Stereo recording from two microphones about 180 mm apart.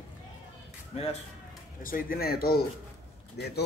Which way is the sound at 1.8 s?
50° left (ahead or behind).